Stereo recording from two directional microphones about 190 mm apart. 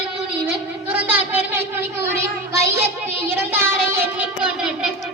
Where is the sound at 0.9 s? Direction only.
10° right (ahead or behind).